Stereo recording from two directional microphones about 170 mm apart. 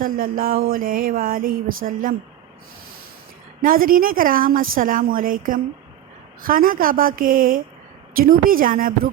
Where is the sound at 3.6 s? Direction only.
55° right (ahead or behind).